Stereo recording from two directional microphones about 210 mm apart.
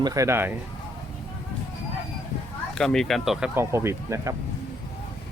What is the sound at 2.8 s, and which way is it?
Speech, centre (ahead or behind).